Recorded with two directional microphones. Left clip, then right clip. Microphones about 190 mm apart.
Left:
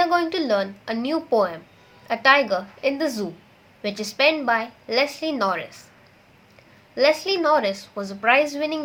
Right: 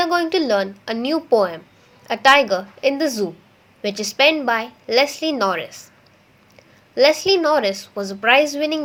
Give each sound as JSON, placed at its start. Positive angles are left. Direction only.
{"t": 0.0, "sound": "a woman's voice", "side_deg": -30}
{"t": 6.9, "sound": "a woman's voice", "side_deg": -35}